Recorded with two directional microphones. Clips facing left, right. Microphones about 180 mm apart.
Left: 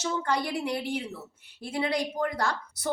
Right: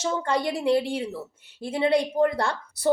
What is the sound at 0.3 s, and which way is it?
A woman's voice, 25° right (ahead or behind).